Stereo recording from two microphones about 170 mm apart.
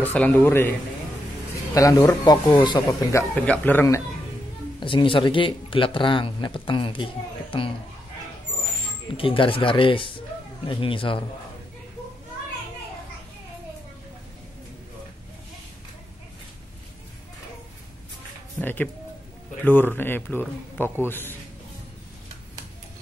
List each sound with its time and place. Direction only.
0.0 s a man's voice: 10° left (ahead or behind)
4.7 s a man's voice: 30° left (ahead or behind)
9.1 s speech: 30° left (ahead or behind)
18.6 s a man's voice: 10° left (ahead or behind)